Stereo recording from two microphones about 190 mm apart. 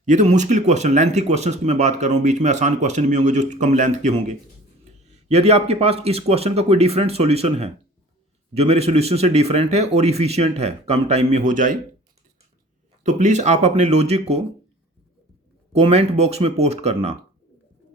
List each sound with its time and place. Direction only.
0.0 s speech: 40° right (ahead or behind)
13.0 s speech: 40° right (ahead or behind)
15.7 s speech: 35° right (ahead or behind)